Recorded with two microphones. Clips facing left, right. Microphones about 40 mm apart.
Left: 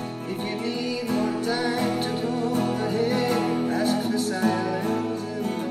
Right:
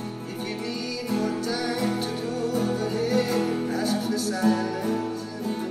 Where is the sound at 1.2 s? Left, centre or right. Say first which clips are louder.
Left 2 dB; left.